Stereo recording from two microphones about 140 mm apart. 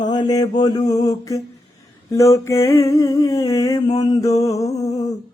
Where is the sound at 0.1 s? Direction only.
30° left (ahead or behind).